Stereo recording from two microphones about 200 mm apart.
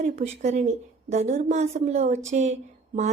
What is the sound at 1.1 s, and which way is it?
Speech, 35° right (ahead or behind).